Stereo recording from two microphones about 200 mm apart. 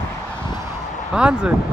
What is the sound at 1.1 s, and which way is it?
Speech, 5° right (ahead or behind).